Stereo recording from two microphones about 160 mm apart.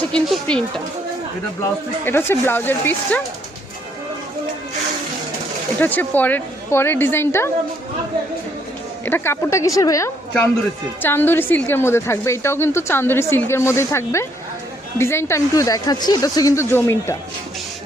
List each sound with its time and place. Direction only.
0.1 s speech: 5° left (ahead or behind)
2.0 s a woman's voice: 15° left (ahead or behind)
5.8 s a woman's voice: 10° left (ahead or behind)
9.0 s a woman's voice: 15° left (ahead or behind)